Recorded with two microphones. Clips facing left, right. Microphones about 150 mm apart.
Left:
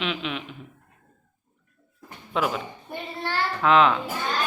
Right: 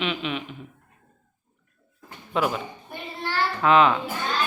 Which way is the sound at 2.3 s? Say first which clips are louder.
Right 1 dB; centre (ahead or behind).